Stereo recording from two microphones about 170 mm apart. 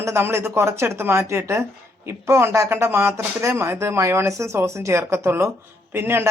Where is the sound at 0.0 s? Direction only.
15° right (ahead or behind).